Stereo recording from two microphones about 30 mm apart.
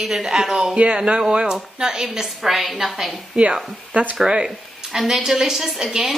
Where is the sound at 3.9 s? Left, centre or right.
Right.